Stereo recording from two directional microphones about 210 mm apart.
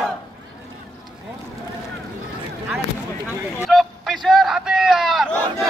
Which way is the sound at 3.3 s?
5° right (ahead or behind).